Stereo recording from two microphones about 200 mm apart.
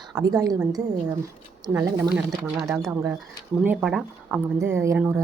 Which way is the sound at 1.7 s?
15° right (ahead or behind).